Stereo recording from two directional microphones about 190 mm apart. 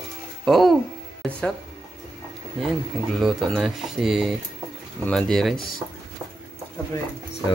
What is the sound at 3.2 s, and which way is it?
Speech, centre (ahead or behind).